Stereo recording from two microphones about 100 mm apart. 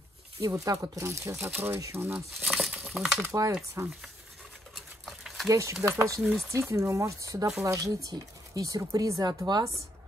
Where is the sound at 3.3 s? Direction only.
30° right (ahead or behind).